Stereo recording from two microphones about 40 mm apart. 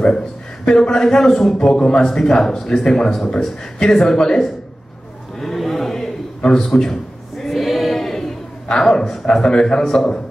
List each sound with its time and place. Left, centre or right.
0.7 s a man's voice: centre
5.4 s a sound: centre
8.6 s a man's voice: centre